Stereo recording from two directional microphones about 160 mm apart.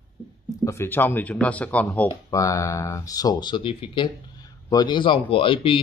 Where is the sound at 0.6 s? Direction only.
15° left (ahead or behind).